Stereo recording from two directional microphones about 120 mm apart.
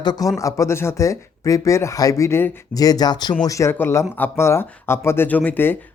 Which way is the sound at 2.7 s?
30° left (ahead or behind).